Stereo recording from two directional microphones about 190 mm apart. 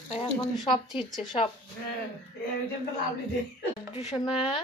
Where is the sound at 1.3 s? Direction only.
30° left (ahead or behind).